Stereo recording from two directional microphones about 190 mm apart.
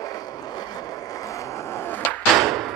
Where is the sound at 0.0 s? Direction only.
20° left (ahead or behind).